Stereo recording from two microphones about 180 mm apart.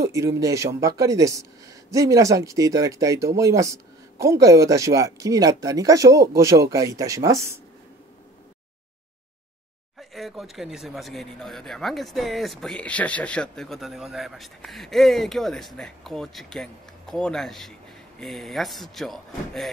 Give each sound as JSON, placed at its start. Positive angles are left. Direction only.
{"t": 0.0, "sound": "speech", "side_deg": -15}
{"t": 9.9, "sound": "speech", "side_deg": 0}